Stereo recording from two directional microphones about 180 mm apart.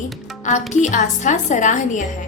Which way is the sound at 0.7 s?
40° left (ahead or behind).